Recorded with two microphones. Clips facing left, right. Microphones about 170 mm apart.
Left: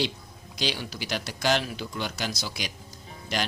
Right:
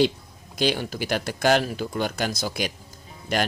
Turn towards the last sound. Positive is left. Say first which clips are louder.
# right 5 dB
turn(degrees=-55)  # may be behind; listen again after turning